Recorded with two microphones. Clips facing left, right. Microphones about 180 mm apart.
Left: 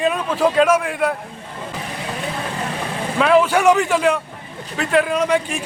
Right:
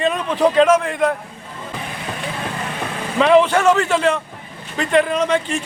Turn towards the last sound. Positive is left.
turn(degrees=10)  # may be behind; listen again after turning